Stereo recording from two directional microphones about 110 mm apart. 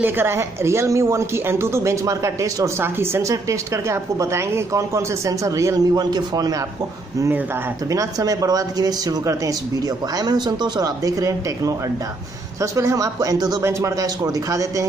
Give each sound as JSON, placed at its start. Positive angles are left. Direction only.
{"t": 0.0, "sound": "speech", "side_deg": -20}
{"t": 7.9, "sound": "speech", "side_deg": -30}